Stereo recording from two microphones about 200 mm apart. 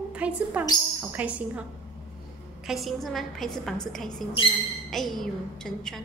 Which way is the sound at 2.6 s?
Centre (ahead or behind).